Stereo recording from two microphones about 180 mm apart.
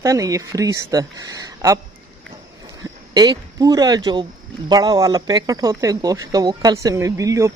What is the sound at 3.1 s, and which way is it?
Speech, 20° right (ahead or behind).